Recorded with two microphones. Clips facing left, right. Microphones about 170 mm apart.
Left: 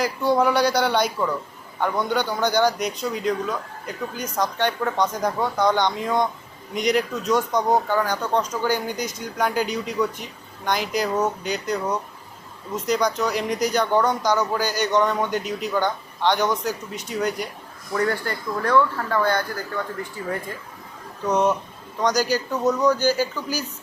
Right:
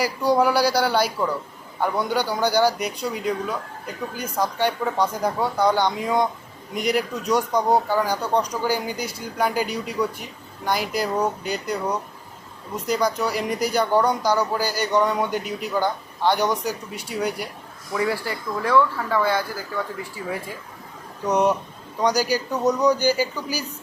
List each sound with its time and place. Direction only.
0.0 s speech: 10° right (ahead or behind)
21.2 s speech: 15° right (ahead or behind)